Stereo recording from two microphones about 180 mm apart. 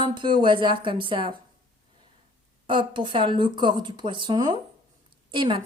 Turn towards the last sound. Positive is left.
turn(degrees=-25)  # may be behind; listen again after turning